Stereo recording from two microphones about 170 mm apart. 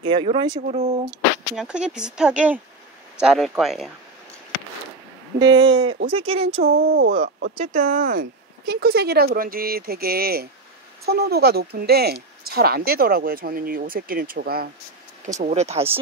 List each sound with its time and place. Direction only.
0.0 s speech: 30° right (ahead or behind)
0.6 s speech: 40° right (ahead or behind)
1.5 s speech: 5° right (ahead or behind)
5.4 s speech: 25° right (ahead or behind)
6.6 s speech: 65° right (ahead or behind)
7.5 s speech: 45° right (ahead or behind); by 14.7 s 60° right (ahead or behind)
15.2 s speech: 40° right (ahead or behind)